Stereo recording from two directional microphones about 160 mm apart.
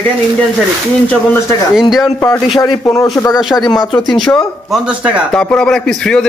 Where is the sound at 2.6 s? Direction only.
20° left (ahead or behind).